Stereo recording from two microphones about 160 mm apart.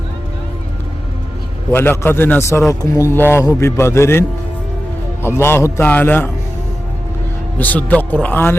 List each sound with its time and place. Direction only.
1.7 s a man's voice: 15° left (ahead or behind)
5.4 s a man's voice: 15° left (ahead or behind)
7.6 s a man's voice: 10° left (ahead or behind)